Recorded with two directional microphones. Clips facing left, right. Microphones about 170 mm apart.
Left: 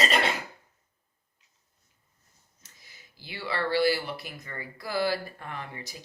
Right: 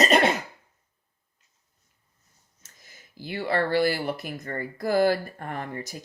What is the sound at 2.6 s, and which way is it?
Speech, 45° right (ahead or behind).